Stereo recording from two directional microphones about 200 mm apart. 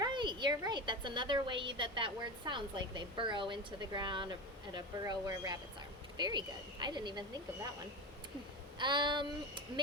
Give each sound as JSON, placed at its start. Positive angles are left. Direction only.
{"t": 0.0, "sound": "a woman's voice", "side_deg": -25}
{"t": 8.8, "sound": "a woman's voice", "side_deg": -20}